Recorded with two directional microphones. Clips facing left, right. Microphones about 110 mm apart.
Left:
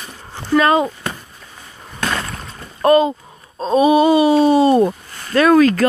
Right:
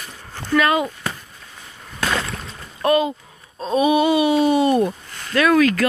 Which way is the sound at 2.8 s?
35° left (ahead or behind).